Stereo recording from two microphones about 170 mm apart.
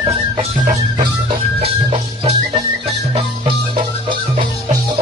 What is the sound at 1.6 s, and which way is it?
Music, 35° right (ahead or behind).